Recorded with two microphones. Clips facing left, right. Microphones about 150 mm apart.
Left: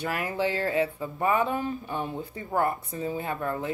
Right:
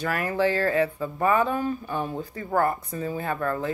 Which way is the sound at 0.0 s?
20° left (ahead or behind).